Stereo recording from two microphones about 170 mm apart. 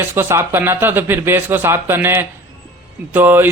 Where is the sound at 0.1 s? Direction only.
15° right (ahead or behind).